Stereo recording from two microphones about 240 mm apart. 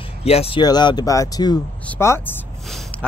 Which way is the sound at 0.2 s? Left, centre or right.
Left.